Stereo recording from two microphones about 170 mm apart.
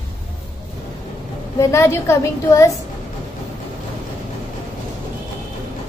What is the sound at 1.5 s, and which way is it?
A woman's voice, 15° left (ahead or behind).